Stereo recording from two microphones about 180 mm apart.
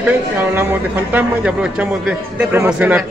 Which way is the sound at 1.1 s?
5° right (ahead or behind).